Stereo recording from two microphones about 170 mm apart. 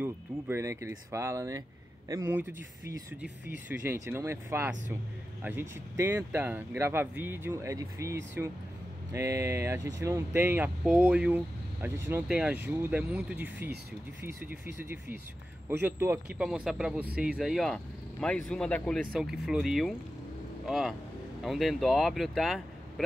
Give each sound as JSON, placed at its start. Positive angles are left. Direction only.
{"t": 0.0, "sound": "speech", "side_deg": -15}
{"t": 16.3, "sound": "speech", "side_deg": -5}